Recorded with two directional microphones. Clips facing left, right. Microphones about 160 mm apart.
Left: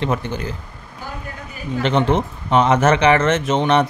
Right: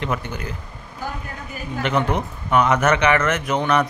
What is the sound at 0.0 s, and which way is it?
Speech, 30° left (ahead or behind).